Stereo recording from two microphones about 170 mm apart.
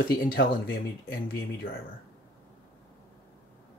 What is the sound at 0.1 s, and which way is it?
Speech, 60° left (ahead or behind).